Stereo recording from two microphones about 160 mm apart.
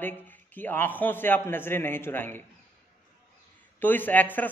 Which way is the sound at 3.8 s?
10° left (ahead or behind).